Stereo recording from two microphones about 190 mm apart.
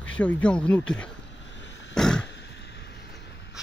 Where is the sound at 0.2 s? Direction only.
5° left (ahead or behind).